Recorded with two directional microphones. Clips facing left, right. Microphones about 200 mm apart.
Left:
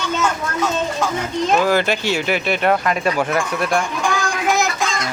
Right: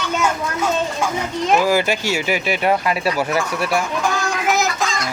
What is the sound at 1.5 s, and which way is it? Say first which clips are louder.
Speech: right 1 dB; 10° right (ahead or behind).